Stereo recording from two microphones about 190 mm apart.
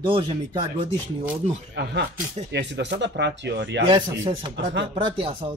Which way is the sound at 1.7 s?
60° right (ahead or behind).